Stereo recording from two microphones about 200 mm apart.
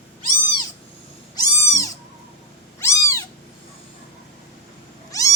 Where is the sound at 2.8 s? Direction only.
15° left (ahead or behind).